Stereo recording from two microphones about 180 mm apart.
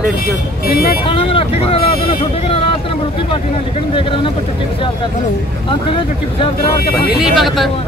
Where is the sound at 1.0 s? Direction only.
30° left (ahead or behind).